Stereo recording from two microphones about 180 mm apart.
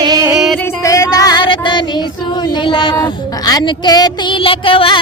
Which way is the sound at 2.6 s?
25° left (ahead or behind).